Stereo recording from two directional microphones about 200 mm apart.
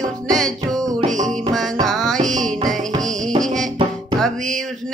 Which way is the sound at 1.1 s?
40° right (ahead or behind).